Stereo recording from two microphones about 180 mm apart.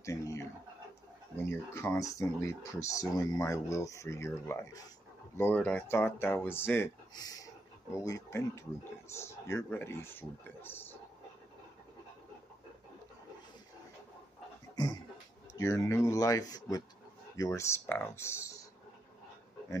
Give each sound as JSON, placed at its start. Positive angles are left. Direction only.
{"t": 0.0, "sound": "a sound", "side_deg": 15}
{"t": 1.5, "sound": "speech", "side_deg": 15}
{"t": 15.5, "sound": "speech", "side_deg": 15}